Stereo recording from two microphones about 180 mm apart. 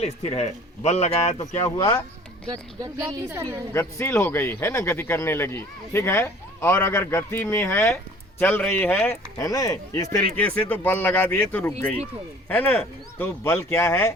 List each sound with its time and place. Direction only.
0.0 s speech: 40° left (ahead or behind)
2.5 s a woman's voice: 20° right (ahead or behind)
3.7 s speech: 15° left (ahead or behind)